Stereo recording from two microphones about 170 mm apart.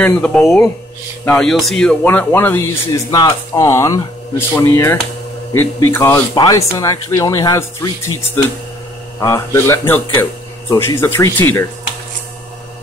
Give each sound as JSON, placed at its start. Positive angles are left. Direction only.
{"t": 0.0, "sound": "speech", "side_deg": 5}